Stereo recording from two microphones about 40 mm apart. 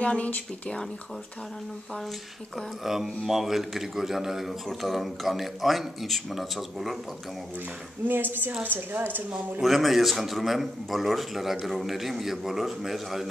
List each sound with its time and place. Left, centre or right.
0.0 s speech: left
2.8 s a man's voice: centre
8.1 s a woman's voice: right
9.6 s speech: centre